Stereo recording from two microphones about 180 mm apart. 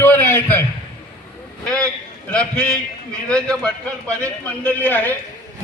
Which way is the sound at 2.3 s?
5° left (ahead or behind).